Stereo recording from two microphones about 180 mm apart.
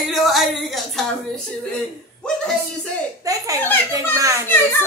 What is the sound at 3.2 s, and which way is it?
A child's voice, 20° right (ahead or behind).